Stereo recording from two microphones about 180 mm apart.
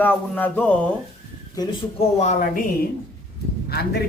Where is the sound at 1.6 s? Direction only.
25° left (ahead or behind).